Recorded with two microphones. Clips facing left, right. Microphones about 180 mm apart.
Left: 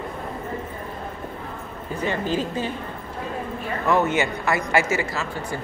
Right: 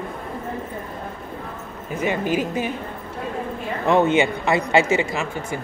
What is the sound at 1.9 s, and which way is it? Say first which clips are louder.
Speech: right 2 dB; 15° right (ahead or behind).